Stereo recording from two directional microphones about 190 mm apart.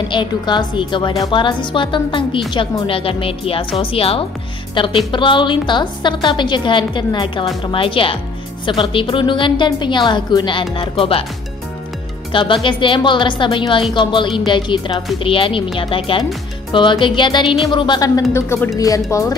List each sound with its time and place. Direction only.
0.1 s a woman's voice: 25° left (ahead or behind)
12.3 s a woman's voice: 25° left (ahead or behind)